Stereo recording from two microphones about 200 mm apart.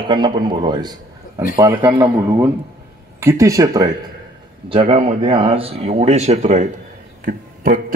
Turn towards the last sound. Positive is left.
turn(degrees=-45)  # may be behind; listen again after turning